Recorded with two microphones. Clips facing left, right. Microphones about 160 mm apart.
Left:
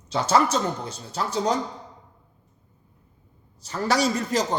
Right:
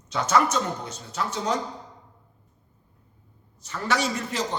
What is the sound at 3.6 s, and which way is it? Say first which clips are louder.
Speech: left 4 dB; 35° left (ahead or behind).